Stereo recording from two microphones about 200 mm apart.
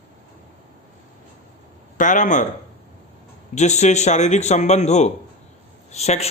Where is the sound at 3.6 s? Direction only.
35° left (ahead or behind).